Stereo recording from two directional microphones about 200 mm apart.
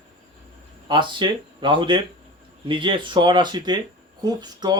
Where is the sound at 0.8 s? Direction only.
25° right (ahead or behind).